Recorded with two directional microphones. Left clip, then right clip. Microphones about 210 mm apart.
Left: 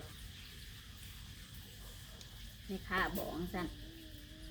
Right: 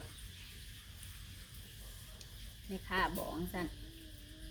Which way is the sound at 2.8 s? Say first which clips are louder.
Right 1 dB; 30° right (ahead or behind).